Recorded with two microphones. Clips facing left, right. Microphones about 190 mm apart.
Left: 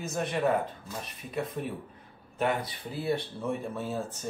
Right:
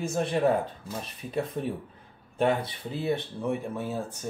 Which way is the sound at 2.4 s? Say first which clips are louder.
Right 4 dB; 30° right (ahead or behind).